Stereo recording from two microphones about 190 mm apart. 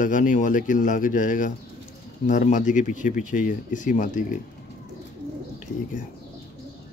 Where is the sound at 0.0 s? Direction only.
45° left (ahead or behind).